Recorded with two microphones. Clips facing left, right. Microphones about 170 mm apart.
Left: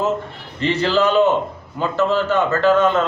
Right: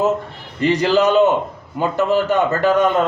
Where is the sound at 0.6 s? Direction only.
15° right (ahead or behind).